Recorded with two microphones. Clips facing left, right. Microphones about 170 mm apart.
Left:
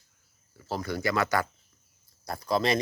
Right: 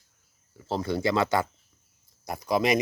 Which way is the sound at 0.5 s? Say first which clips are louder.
Right 4 dB; 25° right (ahead or behind).